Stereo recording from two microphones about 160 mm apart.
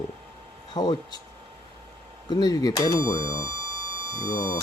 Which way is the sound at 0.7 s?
30° left (ahead or behind).